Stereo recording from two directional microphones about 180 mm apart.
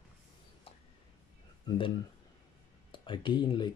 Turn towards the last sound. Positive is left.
turn(degrees=25)  # may be behind; listen again after turning